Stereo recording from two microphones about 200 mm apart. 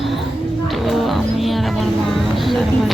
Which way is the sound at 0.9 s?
Centre (ahead or behind).